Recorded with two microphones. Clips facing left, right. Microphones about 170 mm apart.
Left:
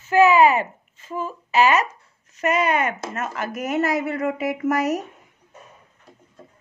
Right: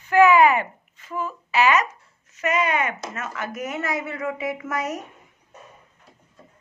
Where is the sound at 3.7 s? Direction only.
40° left (ahead or behind).